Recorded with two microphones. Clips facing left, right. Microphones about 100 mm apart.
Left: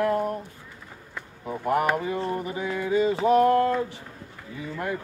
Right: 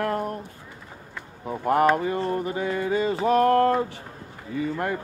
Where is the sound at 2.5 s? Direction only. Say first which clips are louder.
Right 1 dB; 55° right (ahead or behind).